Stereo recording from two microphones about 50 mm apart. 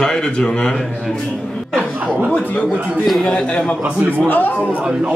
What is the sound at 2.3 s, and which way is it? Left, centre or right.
A man's voice, left.